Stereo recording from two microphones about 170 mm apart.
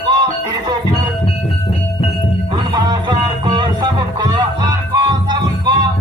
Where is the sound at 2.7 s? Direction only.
25° right (ahead or behind).